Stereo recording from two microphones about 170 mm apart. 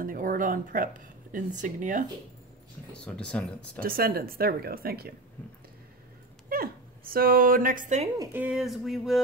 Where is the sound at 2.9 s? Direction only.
5° left (ahead or behind).